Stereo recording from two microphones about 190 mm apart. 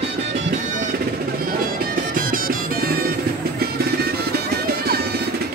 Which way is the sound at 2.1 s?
50° right (ahead or behind).